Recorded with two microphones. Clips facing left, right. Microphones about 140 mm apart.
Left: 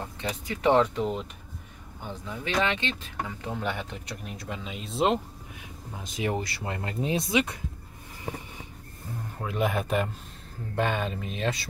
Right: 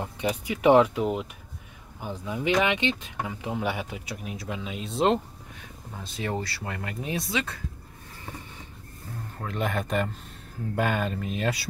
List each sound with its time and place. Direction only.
0.0 s speech: 15° right (ahead or behind)
5.9 s speech: 15° left (ahead or behind)
9.4 s speech: 5° left (ahead or behind)